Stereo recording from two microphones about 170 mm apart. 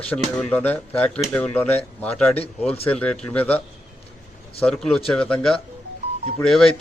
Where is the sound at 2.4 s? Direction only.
35° left (ahead or behind).